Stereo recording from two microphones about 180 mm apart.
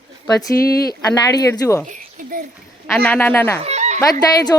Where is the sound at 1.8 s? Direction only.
45° right (ahead or behind).